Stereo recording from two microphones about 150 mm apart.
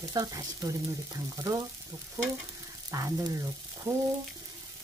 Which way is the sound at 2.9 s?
20° right (ahead or behind).